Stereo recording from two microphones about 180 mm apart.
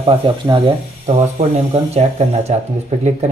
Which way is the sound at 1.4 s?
40° right (ahead or behind).